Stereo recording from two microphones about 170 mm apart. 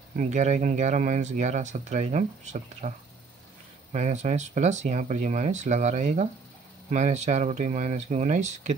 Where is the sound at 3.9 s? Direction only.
45° right (ahead or behind).